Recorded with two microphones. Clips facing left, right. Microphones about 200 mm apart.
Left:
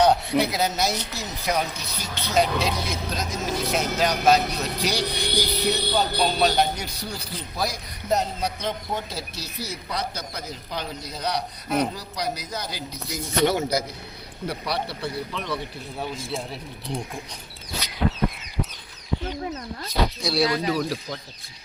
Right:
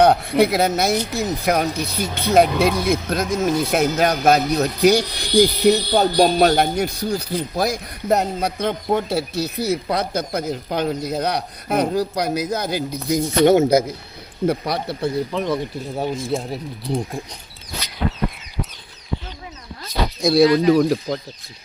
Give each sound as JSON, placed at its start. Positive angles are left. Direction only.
{"t": 0.0, "sound": "speech", "side_deg": -55}
{"t": 20.2, "sound": "speech", "side_deg": -45}